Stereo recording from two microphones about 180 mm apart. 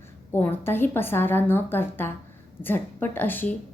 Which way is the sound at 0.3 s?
10° left (ahead or behind).